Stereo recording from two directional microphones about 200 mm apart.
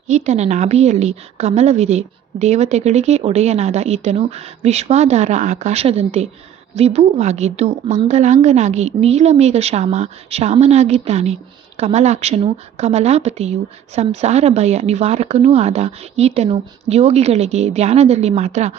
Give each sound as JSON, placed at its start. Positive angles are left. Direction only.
{"t": 0.1, "sound": "speech", "side_deg": -35}